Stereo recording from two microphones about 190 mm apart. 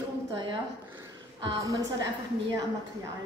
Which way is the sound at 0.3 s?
25° right (ahead or behind).